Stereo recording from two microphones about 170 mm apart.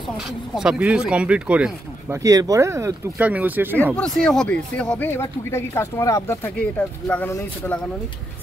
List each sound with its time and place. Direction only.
0.6 s speech: 5° right (ahead or behind)
2.2 s speech: 20° right (ahead or behind)
3.7 s speech: 10° left (ahead or behind)